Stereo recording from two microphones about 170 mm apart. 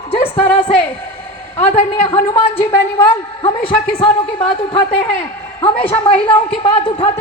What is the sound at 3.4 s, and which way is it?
A man's voice, 35° left (ahead or behind).